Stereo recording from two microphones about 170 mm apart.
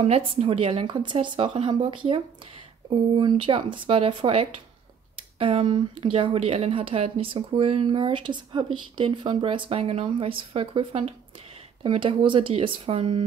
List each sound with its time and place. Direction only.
0.0 s speech: 35° right (ahead or behind)